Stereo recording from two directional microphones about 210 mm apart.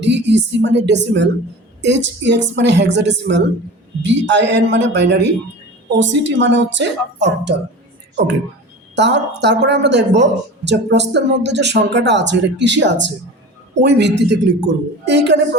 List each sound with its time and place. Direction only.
0.0 s speech: 55° right (ahead or behind)